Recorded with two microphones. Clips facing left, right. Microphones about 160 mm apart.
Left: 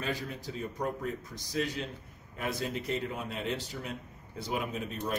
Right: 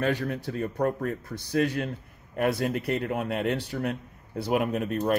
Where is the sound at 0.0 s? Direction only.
60° right (ahead or behind).